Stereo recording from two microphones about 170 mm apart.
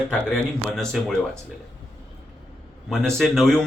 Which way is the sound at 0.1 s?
5° left (ahead or behind).